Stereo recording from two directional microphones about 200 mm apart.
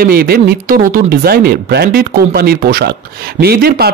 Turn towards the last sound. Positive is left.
turn(degrees=-50)  # may be behind; listen again after turning